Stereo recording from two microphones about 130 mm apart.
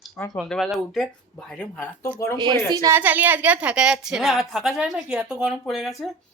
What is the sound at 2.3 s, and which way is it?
Speech, 35° right (ahead or behind).